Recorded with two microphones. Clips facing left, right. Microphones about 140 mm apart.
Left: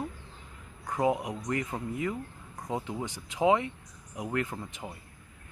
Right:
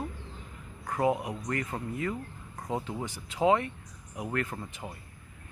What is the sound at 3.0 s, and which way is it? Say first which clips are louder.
Speech: even; 15° left (ahead or behind).